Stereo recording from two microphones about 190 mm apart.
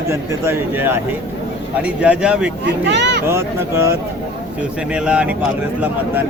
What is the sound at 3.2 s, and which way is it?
A man's voice, 15° right (ahead or behind).